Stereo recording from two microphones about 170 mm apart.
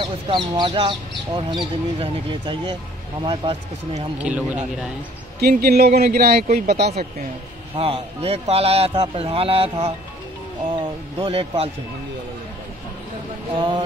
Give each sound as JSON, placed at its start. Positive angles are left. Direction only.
{"t": 0.0, "sound": "a man's voice", "side_deg": -25}
{"t": 4.2, "sound": "speech", "side_deg": -10}
{"t": 5.4, "sound": "speech", "side_deg": -65}
{"t": 6.4, "sound": "speech", "side_deg": -45}
{"t": 6.7, "sound": "speech", "side_deg": -70}
{"t": 7.7, "sound": "a man's voice", "side_deg": -35}
{"t": 13.6, "sound": "speech", "side_deg": -30}